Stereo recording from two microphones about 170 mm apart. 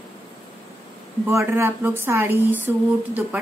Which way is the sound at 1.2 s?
15° right (ahead or behind).